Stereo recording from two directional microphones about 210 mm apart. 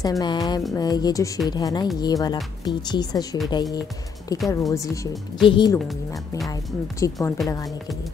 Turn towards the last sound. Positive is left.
turn(degrees=15)  # may be behind; listen again after turning